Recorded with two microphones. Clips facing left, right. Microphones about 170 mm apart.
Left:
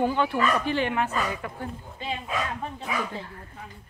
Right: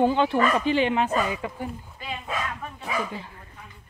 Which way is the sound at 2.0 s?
25° left (ahead or behind).